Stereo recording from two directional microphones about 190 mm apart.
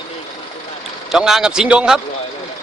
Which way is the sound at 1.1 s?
Centre (ahead or behind).